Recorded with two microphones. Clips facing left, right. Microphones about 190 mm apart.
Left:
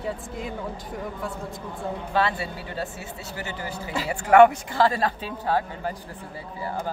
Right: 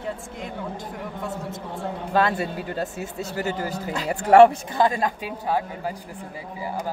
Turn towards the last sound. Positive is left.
turn(degrees=-15)  # may be behind; listen again after turning